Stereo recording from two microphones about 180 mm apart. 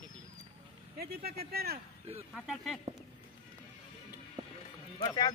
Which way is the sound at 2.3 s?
Centre (ahead or behind).